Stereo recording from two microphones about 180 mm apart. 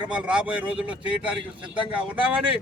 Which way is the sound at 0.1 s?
5° right (ahead or behind).